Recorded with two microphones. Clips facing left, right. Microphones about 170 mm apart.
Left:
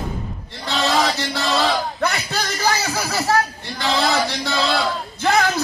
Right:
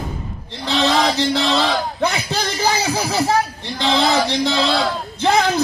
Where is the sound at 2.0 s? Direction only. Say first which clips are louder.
Right 2 dB; 15° right (ahead or behind).